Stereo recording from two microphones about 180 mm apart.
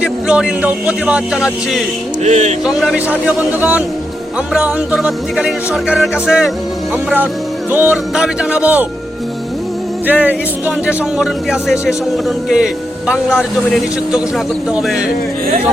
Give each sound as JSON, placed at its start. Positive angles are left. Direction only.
{"t": 0.0, "sound": "speech", "side_deg": -5}
{"t": 2.2, "sound": "speech", "side_deg": -40}
{"t": 2.6, "sound": "a man's voice", "side_deg": -5}
{"t": 7.7, "sound": "a man's voice", "side_deg": -10}
{"t": 10.1, "sound": "a man's voice", "side_deg": -10}
{"t": 12.5, "sound": "speech", "side_deg": -5}